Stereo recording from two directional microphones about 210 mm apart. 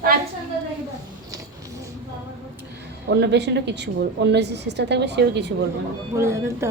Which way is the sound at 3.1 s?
55° right (ahead or behind).